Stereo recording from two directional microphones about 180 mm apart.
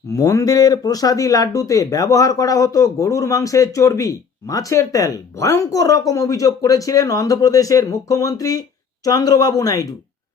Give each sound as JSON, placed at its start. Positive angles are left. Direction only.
{"t": 0.1, "sound": "speech", "side_deg": 20}